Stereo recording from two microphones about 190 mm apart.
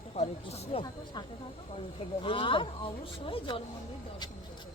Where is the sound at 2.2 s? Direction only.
25° left (ahead or behind).